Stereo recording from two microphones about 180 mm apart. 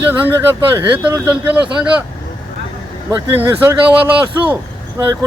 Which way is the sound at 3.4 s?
10° right (ahead or behind).